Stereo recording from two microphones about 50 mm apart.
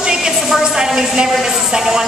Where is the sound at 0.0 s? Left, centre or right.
Centre.